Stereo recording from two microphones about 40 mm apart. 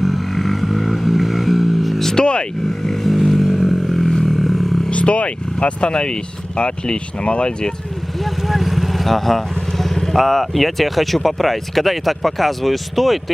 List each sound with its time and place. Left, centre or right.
0.0 s vehicle: centre
2.0 s vehicle: left
3.0 s vehicle: centre
4.3 s a sound: centre
4.9 s vehicle: left
6.6 s speech: left
8.5 s vehicle: centre
10.1 s speech: centre